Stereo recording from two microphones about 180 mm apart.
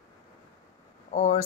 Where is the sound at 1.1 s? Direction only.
40° left (ahead or behind).